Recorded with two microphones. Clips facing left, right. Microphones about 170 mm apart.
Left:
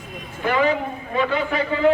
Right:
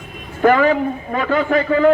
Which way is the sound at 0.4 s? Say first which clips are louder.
Right 7 dB; 50° right (ahead or behind).